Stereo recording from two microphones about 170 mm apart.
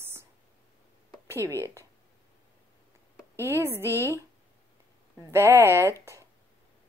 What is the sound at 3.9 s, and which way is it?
Speech, 15° left (ahead or behind).